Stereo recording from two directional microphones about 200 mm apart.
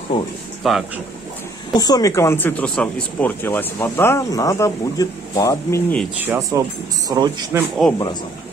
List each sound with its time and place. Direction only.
0.1 s speech: 25° left (ahead or behind)
0.7 s speech: centre (ahead or behind)
1.7 s speech: 20° left (ahead or behind)
6.2 s speech: 10° right (ahead or behind)
7.8 s speech: 5° left (ahead or behind)